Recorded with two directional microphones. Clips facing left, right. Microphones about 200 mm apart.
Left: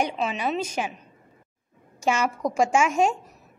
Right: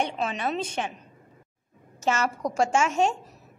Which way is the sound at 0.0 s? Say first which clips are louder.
Left 2 dB; 5° left (ahead or behind).